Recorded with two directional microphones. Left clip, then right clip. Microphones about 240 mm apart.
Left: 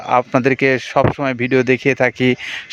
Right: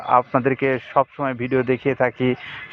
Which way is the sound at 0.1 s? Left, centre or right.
Left.